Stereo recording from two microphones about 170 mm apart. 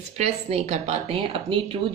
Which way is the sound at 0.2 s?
40° right (ahead or behind).